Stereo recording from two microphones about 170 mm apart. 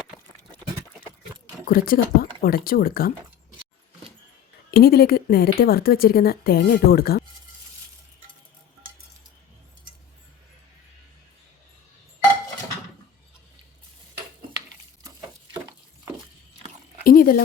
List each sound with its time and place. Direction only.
1.6 s a woman's voice: 60° left (ahead or behind)
4.7 s a woman's voice: 65° left (ahead or behind)
17.0 s a sound: 60° left (ahead or behind)